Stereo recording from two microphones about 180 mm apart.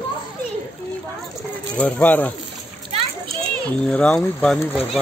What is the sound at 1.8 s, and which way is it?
Speech, 10° left (ahead or behind).